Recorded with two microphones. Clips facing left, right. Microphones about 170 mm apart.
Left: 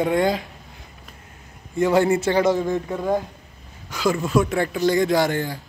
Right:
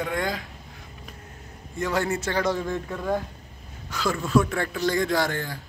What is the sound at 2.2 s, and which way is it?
Speech, 20° left (ahead or behind).